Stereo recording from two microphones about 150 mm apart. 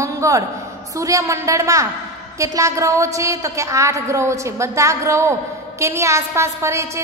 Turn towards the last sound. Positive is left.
turn(degrees=-20)  # may be behind; listen again after turning